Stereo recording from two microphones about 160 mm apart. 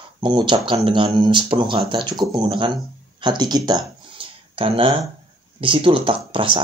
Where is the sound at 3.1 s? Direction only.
25° right (ahead or behind).